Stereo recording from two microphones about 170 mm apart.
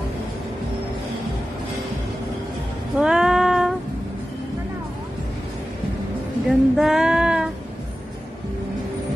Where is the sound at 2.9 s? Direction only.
5° right (ahead or behind).